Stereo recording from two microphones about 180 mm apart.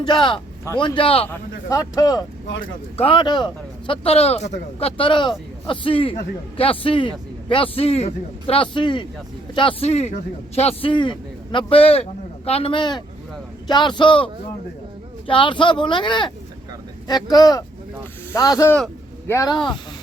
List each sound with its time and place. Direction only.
0.0 s a man's voice: 25° left (ahead or behind)
1.3 s a man's voice: 15° left (ahead or behind)
15.3 s a man's voice: 25° left (ahead or behind)